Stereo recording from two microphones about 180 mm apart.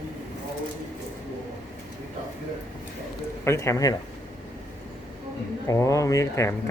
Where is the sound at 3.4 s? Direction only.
15° left (ahead or behind).